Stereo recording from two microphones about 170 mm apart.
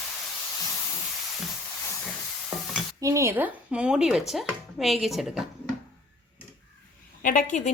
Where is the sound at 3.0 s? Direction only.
15° right (ahead or behind); by 5.4 s centre (ahead or behind).